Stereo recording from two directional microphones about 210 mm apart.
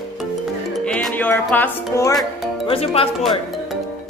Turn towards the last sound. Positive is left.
turn(degrees=25)  # may be behind; listen again after turning